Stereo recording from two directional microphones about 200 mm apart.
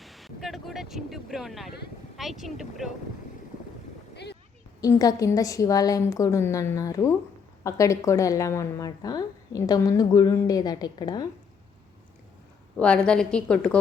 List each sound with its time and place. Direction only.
0.0 s a sound: centre (ahead or behind)
2.1 s a woman's voice: centre (ahead or behind)
4.1 s boat: 55° left (ahead or behind)
4.8 s a woman's voice: 20° left (ahead or behind)
12.8 s a woman's voice: 5° left (ahead or behind)